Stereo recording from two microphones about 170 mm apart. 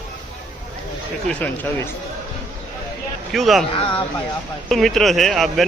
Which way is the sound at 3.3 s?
Centre (ahead or behind).